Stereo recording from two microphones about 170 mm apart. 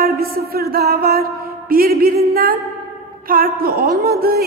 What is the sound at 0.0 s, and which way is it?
Music, 65° right (ahead or behind).